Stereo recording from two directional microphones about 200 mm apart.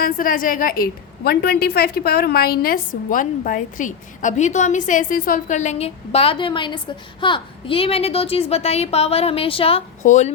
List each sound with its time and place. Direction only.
0.0 s a woman's voice: 45° left (ahead or behind)